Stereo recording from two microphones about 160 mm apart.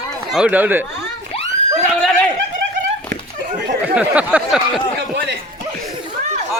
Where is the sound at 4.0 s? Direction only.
10° right (ahead or behind).